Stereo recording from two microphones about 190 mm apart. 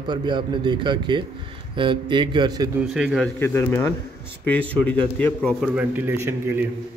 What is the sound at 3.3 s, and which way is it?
A man's voice, 10° left (ahead or behind).